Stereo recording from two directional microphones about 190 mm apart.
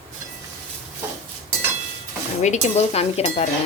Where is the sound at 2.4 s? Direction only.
35° left (ahead or behind).